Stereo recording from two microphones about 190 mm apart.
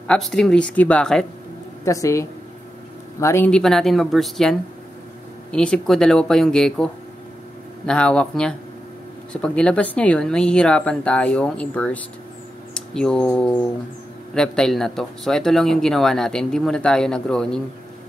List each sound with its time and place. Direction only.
0.1 s speech: centre (ahead or behind)
1.9 s speech: 15° left (ahead or behind)